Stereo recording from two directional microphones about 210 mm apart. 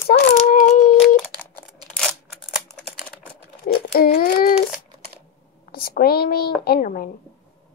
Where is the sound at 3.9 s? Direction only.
40° left (ahead or behind).